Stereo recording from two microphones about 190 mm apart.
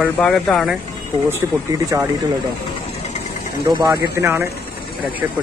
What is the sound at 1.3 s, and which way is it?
Speech, 15° right (ahead or behind).